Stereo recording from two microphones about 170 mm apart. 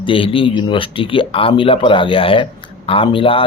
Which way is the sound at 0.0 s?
30° left (ahead or behind).